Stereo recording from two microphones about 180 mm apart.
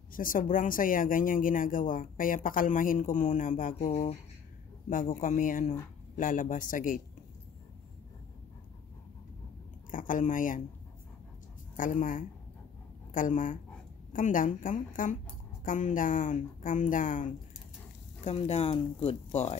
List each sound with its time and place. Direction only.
0.1 s speech: 50° left (ahead or behind)
9.8 s speech: 50° left (ahead or behind)
11.7 s speech: 45° left (ahead or behind)
18.2 s speech: 35° left (ahead or behind)